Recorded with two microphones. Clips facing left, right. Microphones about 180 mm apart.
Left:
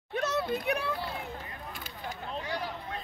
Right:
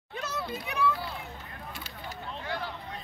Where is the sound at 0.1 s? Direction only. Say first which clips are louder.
Left 6 dB; 65° left (ahead or behind).